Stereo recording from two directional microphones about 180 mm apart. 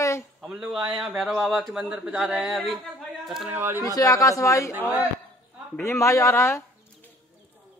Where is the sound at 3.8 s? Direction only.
20° left (ahead or behind).